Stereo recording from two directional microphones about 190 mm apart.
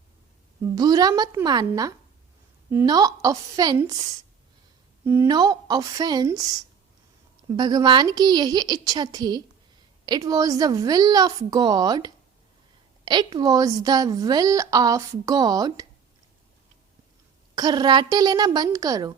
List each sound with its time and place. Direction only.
0.8 s a woman's voice: 20° right (ahead or behind)
5.0 s a woman's voice: 15° right (ahead or behind)
17.5 s a woman's voice: 20° right (ahead or behind)